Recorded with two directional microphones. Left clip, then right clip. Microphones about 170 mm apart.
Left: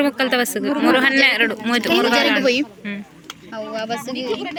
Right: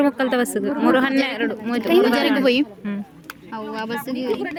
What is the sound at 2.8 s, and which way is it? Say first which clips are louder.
Speech: left 1 dB; 30° right (ahead or behind).